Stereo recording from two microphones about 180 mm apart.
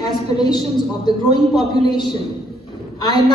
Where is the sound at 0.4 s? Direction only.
25° left (ahead or behind).